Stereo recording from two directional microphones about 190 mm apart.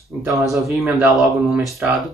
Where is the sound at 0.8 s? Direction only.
Centre (ahead or behind).